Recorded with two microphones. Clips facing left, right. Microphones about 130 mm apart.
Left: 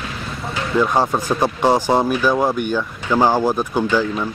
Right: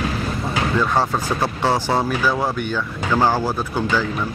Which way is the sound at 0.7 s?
15° left (ahead or behind).